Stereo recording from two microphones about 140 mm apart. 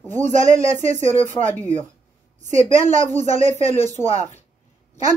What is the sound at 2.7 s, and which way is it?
Speech, 60° right (ahead or behind).